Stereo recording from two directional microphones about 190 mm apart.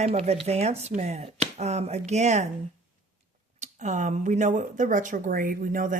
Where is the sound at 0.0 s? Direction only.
35° right (ahead or behind).